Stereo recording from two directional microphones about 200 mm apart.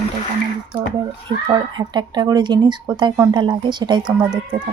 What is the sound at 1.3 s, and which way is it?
A woman's voice, 25° right (ahead or behind).